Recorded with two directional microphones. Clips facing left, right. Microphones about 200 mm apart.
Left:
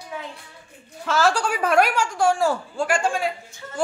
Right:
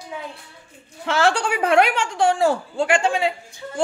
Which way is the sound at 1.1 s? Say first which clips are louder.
Right 1 dB; 25° right (ahead or behind).